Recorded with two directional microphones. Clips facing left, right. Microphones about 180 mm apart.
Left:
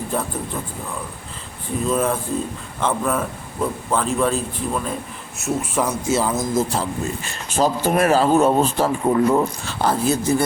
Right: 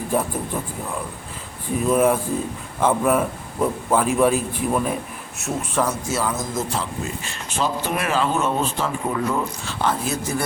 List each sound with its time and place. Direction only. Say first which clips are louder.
0.1 s a man's voice: right 4 dB; 10° right (ahead or behind)
1.8 s a man's voice: right 3 dB; 10° right (ahead or behind)
5.4 s speech: left 1 dB; 10° left (ahead or behind)
6.1 s speech: left 4 dB; 25° left (ahead or behind)